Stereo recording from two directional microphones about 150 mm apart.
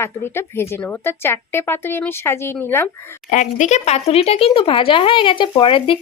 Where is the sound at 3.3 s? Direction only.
55° left (ahead or behind).